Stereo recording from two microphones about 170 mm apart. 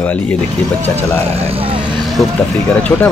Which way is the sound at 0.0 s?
10° left (ahead or behind).